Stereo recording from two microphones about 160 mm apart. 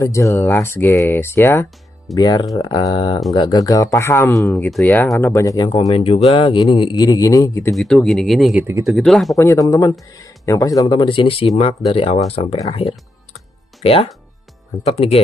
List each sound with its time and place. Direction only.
0.0 s speech: 20° left (ahead or behind)
2.1 s speech: 25° left (ahead or behind)
5.9 s speech: 40° left (ahead or behind); by 7.7 s 20° left (ahead or behind)
7.7 s speech: centre (ahead or behind)
9.4 s speech: 15° left (ahead or behind); by 15.2 s 40° left (ahead or behind)